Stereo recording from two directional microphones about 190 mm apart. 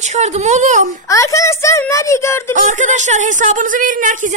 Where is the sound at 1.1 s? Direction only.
15° left (ahead or behind).